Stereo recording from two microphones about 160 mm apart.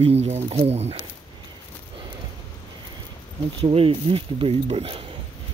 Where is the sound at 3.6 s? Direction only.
35° right (ahead or behind).